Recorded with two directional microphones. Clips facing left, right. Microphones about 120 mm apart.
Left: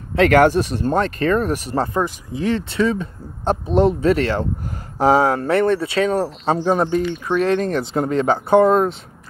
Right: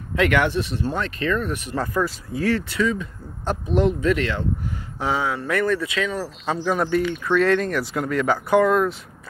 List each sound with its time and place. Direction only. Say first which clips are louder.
0.1 s speech: left 7 dB; 35° left (ahead or behind)
2.0 s speech: left 2 dB; 20° left (ahead or behind); by 5.5 s 40° left (ahead or behind)
5.5 s speech: left 5 dB; 30° left (ahead or behind)